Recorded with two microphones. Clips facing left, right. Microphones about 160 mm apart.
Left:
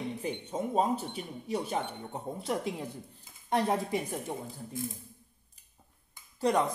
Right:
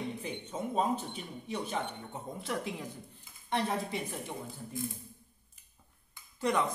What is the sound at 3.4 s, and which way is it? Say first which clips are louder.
Speech: left 4 dB; 45° left (ahead or behind).